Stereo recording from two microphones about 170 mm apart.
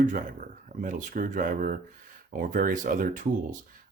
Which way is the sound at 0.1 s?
50° right (ahead or behind).